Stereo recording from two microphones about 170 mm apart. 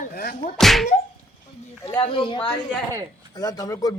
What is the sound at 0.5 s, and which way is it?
Speech, centre (ahead or behind).